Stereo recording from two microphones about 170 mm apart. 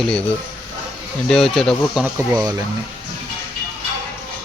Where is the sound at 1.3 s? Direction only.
5° left (ahead or behind).